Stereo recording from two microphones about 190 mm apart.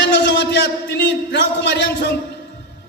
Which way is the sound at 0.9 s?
70° left (ahead or behind).